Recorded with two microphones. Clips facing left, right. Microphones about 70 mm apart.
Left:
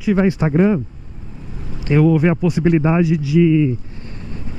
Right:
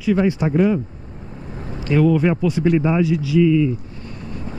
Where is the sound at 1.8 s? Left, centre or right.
Left.